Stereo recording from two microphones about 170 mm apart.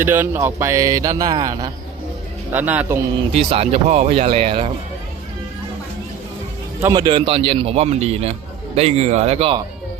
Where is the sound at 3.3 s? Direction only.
35° right (ahead or behind).